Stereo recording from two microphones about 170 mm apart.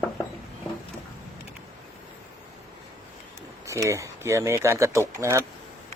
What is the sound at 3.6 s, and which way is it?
Speech, 20° right (ahead or behind).